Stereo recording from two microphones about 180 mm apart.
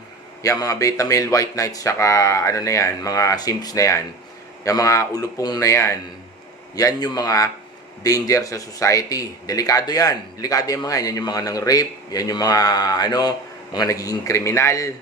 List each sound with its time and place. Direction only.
0.4 s speech: 20° left (ahead or behind)